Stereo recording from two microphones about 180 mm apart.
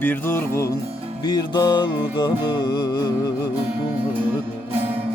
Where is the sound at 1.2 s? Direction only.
20° left (ahead or behind).